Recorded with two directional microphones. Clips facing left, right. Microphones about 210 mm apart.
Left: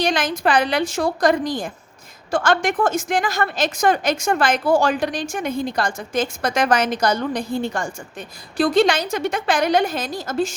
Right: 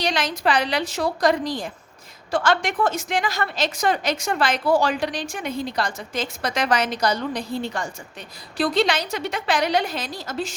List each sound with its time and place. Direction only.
0.0 s a woman's voice: 50° left (ahead or behind)